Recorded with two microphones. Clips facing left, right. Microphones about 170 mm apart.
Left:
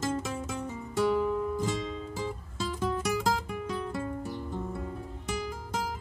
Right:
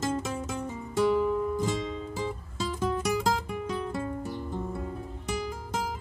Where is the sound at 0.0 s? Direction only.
20° right (ahead or behind).